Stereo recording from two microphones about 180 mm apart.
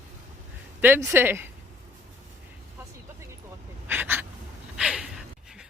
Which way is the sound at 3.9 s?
10° right (ahead or behind).